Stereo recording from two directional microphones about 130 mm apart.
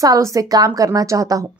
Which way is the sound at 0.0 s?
25° right (ahead or behind).